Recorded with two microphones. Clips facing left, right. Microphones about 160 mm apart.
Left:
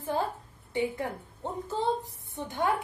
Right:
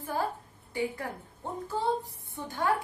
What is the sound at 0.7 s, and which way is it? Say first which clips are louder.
A woman's voice: left 3 dB; 20° left (ahead or behind).